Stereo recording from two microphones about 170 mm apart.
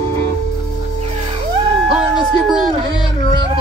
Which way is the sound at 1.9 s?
5° right (ahead or behind).